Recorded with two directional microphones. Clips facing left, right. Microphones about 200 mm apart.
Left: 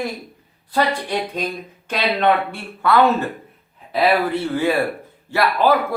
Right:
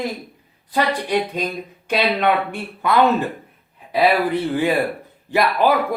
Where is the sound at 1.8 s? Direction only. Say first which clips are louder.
Even; 15° right (ahead or behind).